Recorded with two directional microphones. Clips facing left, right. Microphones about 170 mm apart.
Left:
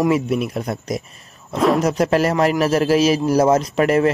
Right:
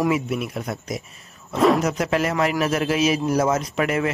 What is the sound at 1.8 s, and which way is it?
A man's voice, 35° left (ahead or behind).